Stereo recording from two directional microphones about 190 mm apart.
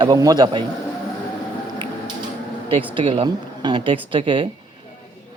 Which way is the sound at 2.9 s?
25° right (ahead or behind).